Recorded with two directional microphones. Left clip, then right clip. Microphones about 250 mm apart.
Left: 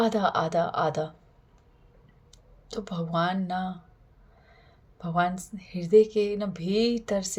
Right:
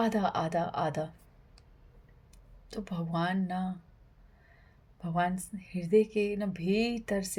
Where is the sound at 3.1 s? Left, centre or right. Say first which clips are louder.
Left 6 dB; right.